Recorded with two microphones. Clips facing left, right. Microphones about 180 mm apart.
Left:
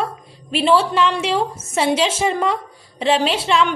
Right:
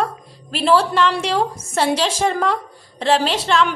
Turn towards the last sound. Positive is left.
turn(degrees=5)  # may be behind; listen again after turning